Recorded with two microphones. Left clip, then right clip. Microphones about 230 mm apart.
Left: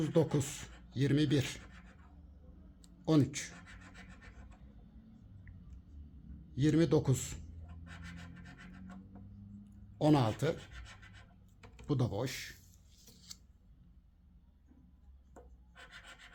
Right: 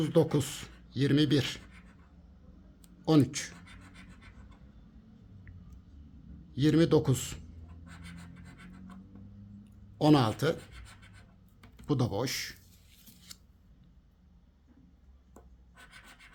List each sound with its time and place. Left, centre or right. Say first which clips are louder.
0.0 s speech: right 5 dB; centre
2.8 s speech: right 5 dB; centre
6.5 s speech: right 5 dB; centre
10.0 s speech: right 5 dB; centre
11.9 s speech: right 5 dB; centre